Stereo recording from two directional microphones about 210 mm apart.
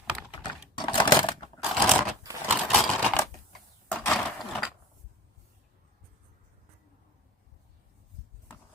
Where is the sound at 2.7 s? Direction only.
5° left (ahead or behind).